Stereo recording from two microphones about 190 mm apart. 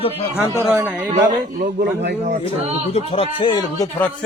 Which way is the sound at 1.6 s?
45° right (ahead or behind).